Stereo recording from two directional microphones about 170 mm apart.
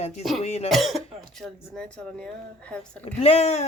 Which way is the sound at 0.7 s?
Centre (ahead or behind).